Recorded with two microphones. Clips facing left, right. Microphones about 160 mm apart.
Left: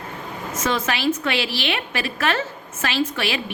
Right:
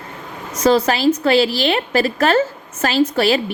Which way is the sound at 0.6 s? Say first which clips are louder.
Right 8 dB; 35° right (ahead or behind).